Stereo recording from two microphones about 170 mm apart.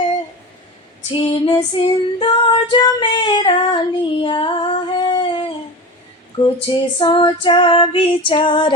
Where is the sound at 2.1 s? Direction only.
30° left (ahead or behind).